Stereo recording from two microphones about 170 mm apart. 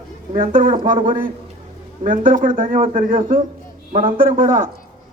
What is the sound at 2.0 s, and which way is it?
A man's voice, 50° right (ahead or behind).